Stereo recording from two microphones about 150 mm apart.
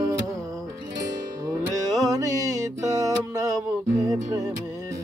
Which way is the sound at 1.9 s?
25° right (ahead or behind).